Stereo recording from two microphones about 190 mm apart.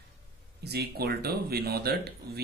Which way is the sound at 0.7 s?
55° right (ahead or behind).